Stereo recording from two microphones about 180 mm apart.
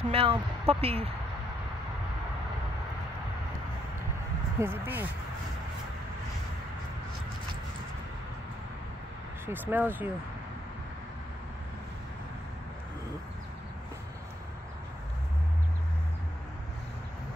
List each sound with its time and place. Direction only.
0.1 s speech: 30° right (ahead or behind)
4.6 s speech: 10° right (ahead or behind)
9.5 s speech: 10° right (ahead or behind)